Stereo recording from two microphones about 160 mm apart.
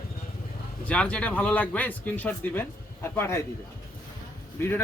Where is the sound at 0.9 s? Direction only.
5° left (ahead or behind).